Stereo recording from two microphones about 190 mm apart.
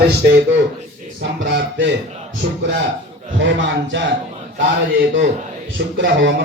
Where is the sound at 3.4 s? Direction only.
75° right (ahead or behind).